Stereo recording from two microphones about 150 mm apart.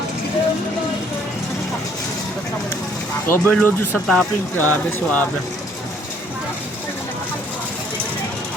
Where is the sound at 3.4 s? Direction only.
10° left (ahead or behind).